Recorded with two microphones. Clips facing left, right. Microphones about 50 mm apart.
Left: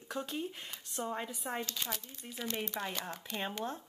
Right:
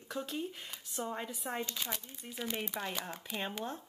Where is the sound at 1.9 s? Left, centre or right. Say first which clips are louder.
Even; centre.